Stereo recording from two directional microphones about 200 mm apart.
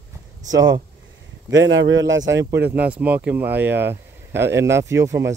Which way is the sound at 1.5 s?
65° right (ahead or behind).